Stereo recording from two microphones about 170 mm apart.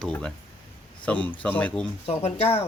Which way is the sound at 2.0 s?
40° left (ahead or behind).